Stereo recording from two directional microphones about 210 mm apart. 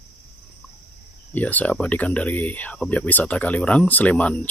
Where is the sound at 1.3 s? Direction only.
5° left (ahead or behind).